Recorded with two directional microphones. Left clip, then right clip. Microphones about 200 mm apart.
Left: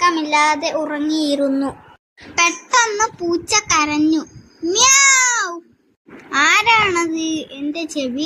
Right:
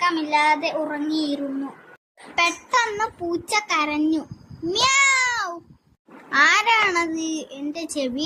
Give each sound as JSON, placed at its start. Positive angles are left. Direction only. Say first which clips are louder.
{"t": 0.0, "sound": "a child's voice", "louder": "left 5 dB", "side_deg": 25}
{"t": 2.3, "sound": "child singing", "louder": "left 5 dB", "side_deg": 10}
{"t": 4.7, "sound": "babbling", "louder": "left 5 dB", "side_deg": 10}
{"t": 6.3, "sound": "child singing", "louder": "left 4 dB", "side_deg": 15}